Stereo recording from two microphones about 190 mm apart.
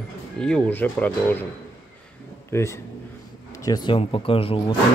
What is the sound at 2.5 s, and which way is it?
A man's voice, 15° left (ahead or behind).